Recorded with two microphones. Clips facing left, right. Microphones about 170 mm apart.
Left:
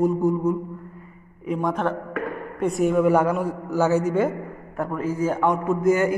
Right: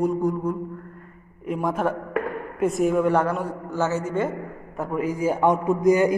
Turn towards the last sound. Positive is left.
turn(degrees=-15)  # may be behind; listen again after turning